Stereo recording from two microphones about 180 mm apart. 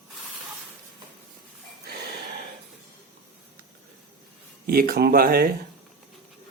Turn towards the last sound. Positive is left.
turn(degrees=-55)  # may be behind; listen again after turning